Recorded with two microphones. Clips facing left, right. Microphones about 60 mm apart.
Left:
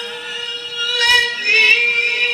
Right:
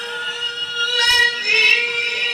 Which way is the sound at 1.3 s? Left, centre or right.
Left.